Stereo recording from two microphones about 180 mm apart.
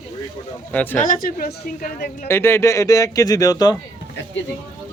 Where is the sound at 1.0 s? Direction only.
50° left (ahead or behind).